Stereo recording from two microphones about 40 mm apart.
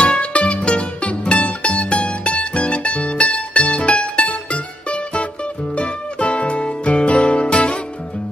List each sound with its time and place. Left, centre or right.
0.2 s music: left